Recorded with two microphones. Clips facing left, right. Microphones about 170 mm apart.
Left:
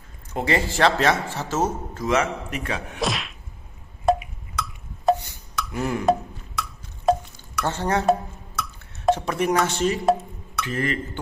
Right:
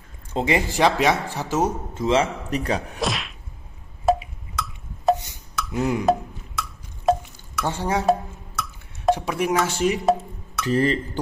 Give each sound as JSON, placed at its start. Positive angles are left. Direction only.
{"t": 0.3, "sound": "a man's voice", "side_deg": -20}
{"t": 2.0, "sound": "a man's voice", "side_deg": -30}
{"t": 3.0, "sound": "whack", "side_deg": 0}
{"t": 4.0, "sound": "a sound", "side_deg": 0}
{"t": 5.1, "sound": "a sound", "side_deg": -20}
{"t": 5.7, "sound": "a man's voice", "side_deg": -20}
{"t": 6.0, "sound": "drip", "side_deg": 0}
{"t": 7.6, "sound": "a sound", "side_deg": -10}
{"t": 9.1, "sound": "speech", "side_deg": -10}
{"t": 10.7, "sound": "a man's voice", "side_deg": -35}